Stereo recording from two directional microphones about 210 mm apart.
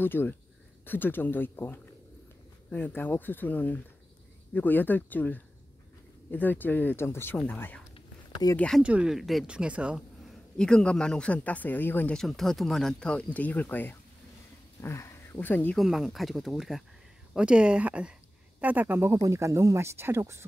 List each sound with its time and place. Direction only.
0.0 s speech: 10° left (ahead or behind)
7.9 s a sound: 20° left (ahead or behind)
8.5 s speech: centre (ahead or behind)